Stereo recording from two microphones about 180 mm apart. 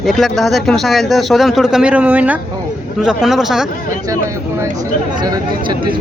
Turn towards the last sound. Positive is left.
turn(degrees=-25)  # may be behind; listen again after turning